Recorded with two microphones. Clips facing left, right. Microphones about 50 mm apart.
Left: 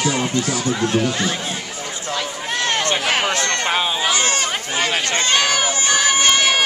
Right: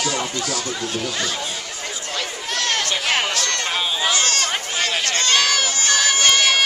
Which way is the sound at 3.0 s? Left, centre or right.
Centre.